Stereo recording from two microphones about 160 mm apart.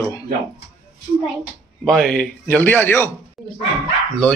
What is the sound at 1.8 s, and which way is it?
Speech, 5° left (ahead or behind).